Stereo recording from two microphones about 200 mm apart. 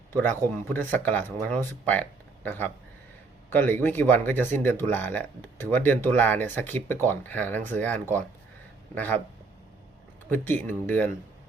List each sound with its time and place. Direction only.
0.1 s speech: 10° left (ahead or behind)
10.2 s speech: 10° left (ahead or behind)